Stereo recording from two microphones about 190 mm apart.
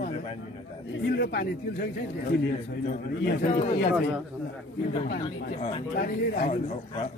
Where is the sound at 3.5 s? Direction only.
35° left (ahead or behind).